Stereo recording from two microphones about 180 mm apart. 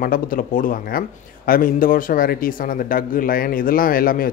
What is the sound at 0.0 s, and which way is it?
Speech, 50° left (ahead or behind).